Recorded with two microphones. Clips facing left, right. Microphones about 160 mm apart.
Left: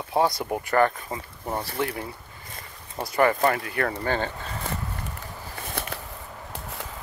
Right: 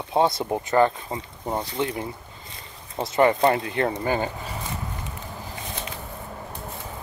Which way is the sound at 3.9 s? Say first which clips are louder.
Right 2 dB; 10° right (ahead or behind).